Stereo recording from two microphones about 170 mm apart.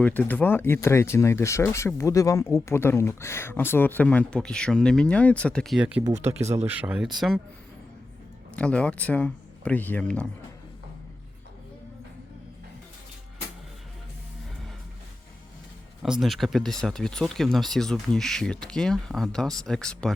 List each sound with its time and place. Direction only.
0.0 s speech: 10° left (ahead or behind)
6.3 s speech: 20° right (ahead or behind)
6.7 s speech: 10° right (ahead or behind)
8.5 s speech: 5° left (ahead or behind)
16.0 s speech: centre (ahead or behind)